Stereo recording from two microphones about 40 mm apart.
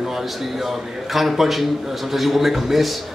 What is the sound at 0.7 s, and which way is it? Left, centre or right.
A man's voice, centre.